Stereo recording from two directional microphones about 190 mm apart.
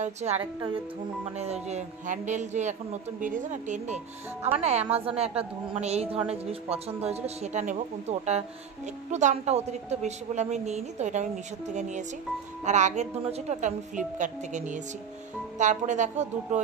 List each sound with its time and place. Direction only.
0.0 s speech: 35° right (ahead or behind)